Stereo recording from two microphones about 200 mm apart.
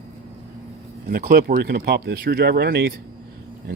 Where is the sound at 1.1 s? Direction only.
45° right (ahead or behind).